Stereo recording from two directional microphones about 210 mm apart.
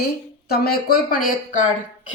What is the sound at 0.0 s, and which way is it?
A woman's voice, 50° left (ahead or behind).